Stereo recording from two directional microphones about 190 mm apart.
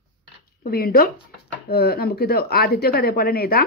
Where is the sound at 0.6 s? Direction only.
50° left (ahead or behind).